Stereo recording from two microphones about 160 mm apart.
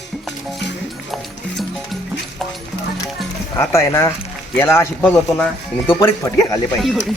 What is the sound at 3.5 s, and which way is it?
Speech, 15° left (ahead or behind).